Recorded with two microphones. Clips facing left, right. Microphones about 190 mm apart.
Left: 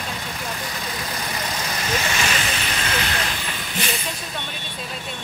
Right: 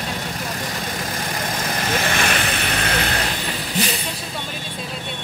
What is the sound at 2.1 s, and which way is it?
Vehicle, 55° right (ahead or behind).